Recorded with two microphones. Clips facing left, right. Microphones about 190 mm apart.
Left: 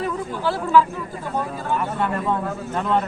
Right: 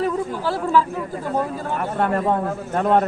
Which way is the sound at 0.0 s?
35° right (ahead or behind).